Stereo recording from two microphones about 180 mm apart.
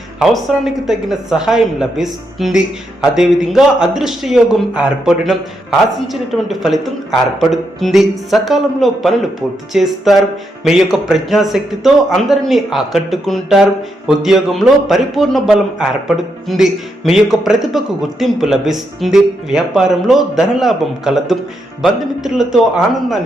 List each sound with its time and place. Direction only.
0.2 s a man's voice: centre (ahead or behind)